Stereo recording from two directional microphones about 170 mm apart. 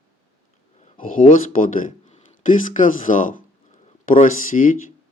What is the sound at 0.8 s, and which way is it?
Speech, 50° left (ahead or behind).